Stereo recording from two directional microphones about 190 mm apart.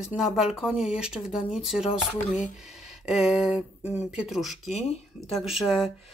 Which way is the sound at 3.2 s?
5° right (ahead or behind).